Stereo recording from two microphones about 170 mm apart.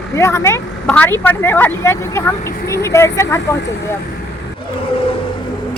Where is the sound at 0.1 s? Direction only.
15° left (ahead or behind).